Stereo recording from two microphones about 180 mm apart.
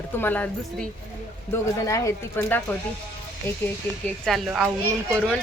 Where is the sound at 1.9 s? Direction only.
15° left (ahead or behind).